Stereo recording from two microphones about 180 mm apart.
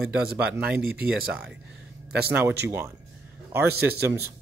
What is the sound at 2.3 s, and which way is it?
A man's voice, 10° right (ahead or behind).